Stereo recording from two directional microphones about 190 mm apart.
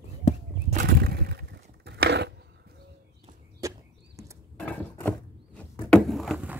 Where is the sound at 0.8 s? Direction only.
55° right (ahead or behind).